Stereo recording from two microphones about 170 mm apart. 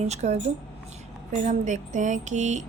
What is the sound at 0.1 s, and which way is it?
A woman's voice, 40° right (ahead or behind).